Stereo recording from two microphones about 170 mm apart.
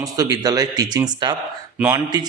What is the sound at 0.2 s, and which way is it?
Speech, 20° right (ahead or behind).